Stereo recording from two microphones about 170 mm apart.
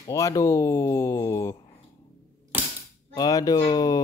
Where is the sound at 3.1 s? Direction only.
20° left (ahead or behind).